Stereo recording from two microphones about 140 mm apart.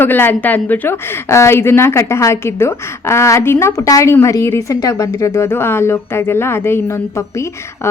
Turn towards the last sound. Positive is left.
turn(degrees=15)  # may be behind; listen again after turning